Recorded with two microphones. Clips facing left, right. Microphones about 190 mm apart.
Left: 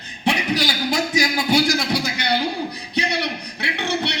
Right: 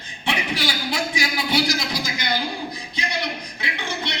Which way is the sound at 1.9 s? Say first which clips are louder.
Left 4 dB; 70° left (ahead or behind).